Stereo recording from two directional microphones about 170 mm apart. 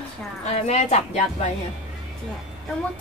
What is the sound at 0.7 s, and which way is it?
Speech, 40° left (ahead or behind).